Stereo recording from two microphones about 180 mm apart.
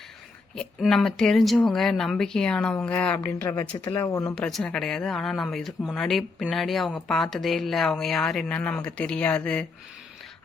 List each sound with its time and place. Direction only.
0.5 s speech: 5° left (ahead or behind)
3.4 s speech: 20° left (ahead or behind)
4.4 s speech: 5° left (ahead or behind)